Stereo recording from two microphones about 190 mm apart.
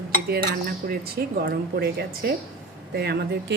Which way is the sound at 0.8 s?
55° right (ahead or behind).